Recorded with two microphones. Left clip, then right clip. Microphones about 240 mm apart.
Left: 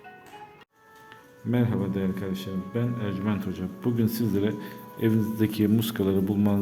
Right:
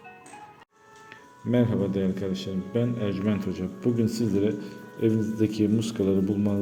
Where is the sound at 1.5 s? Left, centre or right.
Centre.